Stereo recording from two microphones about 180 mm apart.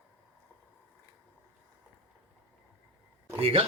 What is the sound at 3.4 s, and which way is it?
Speech, 30° right (ahead or behind).